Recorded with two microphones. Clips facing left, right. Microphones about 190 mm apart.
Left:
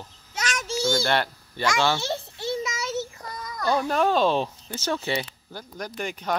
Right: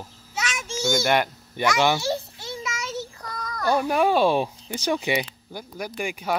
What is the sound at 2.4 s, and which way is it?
Child singing, 30° left (ahead or behind).